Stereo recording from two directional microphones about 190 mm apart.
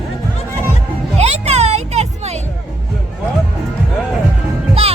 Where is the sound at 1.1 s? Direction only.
35° right (ahead or behind).